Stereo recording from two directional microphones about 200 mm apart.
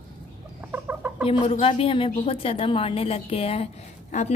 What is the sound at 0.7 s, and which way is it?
Chicken, 5° right (ahead or behind).